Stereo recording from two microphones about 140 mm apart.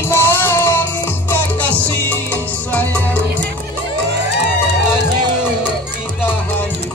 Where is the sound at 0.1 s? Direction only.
15° left (ahead or behind).